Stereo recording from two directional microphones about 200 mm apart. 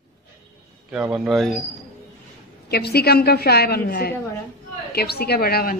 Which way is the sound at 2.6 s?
55° left (ahead or behind).